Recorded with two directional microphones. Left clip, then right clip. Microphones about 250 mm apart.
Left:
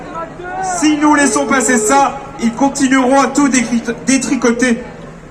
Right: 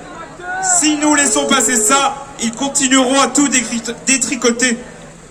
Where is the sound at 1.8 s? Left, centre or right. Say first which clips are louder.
Left 3 dB; right.